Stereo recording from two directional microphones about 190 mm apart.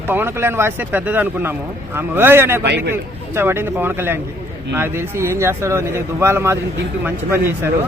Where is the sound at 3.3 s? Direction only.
10° right (ahead or behind).